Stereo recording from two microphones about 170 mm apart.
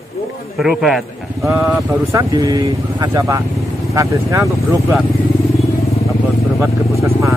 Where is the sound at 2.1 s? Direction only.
20° right (ahead or behind).